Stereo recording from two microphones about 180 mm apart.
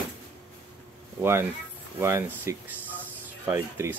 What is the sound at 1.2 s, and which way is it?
Speech, 15° right (ahead or behind).